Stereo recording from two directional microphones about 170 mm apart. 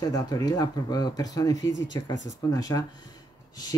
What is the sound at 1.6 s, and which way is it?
Speech, 90° left.